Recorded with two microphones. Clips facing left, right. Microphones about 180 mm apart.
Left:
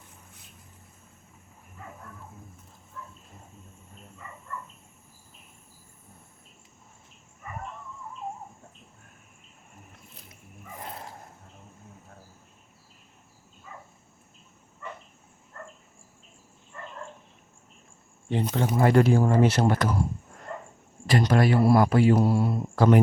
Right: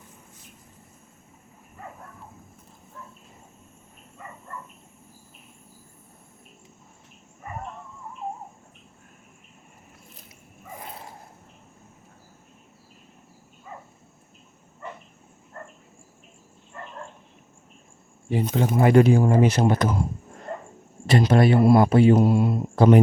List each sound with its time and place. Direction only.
15.6 s dog: 40° right (ahead or behind)
18.3 s speech: 10° right (ahead or behind)
20.5 s dog: 25° right (ahead or behind)
21.1 s speech: 25° right (ahead or behind)